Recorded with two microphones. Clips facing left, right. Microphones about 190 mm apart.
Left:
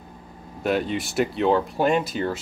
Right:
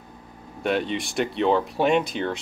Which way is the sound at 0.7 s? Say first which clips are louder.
Left 1 dB; centre (ahead or behind).